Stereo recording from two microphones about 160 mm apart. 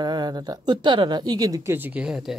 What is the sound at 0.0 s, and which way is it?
A woman's voice, 25° right (ahead or behind).